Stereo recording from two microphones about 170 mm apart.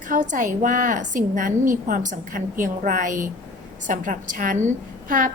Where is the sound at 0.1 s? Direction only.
50° right (ahead or behind).